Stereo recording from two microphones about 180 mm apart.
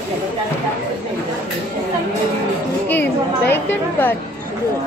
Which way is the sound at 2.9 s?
10° left (ahead or behind).